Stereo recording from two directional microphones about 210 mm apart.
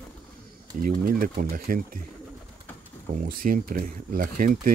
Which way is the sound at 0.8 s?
45° right (ahead or behind).